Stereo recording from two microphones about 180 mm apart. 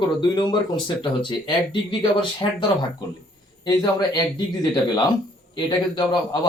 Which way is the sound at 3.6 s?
25° left (ahead or behind).